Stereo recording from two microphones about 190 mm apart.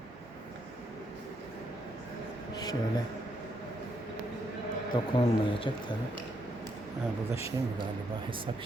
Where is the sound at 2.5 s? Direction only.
20° left (ahead or behind).